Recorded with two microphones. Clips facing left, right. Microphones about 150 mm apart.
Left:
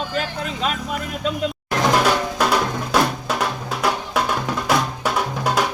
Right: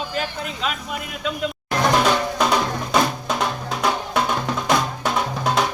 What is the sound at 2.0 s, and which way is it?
Music, 5° left (ahead or behind).